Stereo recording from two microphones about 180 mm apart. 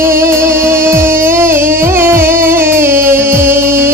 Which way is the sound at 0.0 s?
15° right (ahead or behind).